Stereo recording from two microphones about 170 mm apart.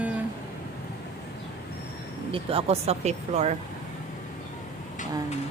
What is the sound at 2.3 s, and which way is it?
Speech, 30° right (ahead or behind).